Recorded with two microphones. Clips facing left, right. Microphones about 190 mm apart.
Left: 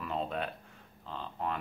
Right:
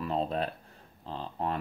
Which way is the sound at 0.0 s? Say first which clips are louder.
Right 4 dB; 35° right (ahead or behind).